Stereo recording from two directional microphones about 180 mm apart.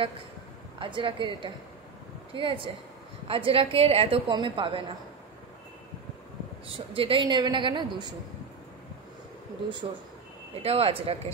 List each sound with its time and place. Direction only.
0.7 s a woman's voice: 30° right (ahead or behind)
6.9 s a woman's voice: 30° right (ahead or behind)
10.5 s speech: 35° right (ahead or behind)